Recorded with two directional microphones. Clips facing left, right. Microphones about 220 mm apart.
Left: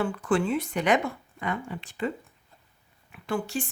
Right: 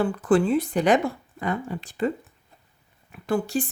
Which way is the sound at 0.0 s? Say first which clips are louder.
Right 5 dB; 35° right (ahead or behind).